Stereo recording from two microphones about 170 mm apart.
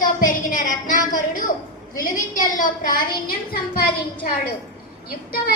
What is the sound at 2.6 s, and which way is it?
A woman's voice, 55° left (ahead or behind).